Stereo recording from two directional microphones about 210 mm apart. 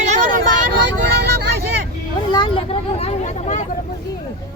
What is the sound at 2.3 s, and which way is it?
Speech, 25° left (ahead or behind).